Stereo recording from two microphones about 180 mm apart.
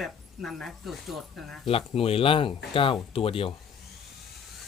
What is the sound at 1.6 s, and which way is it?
Speech, 30° left (ahead or behind).